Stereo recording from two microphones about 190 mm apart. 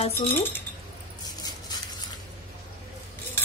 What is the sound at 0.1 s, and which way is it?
Speech, 10° left (ahead or behind).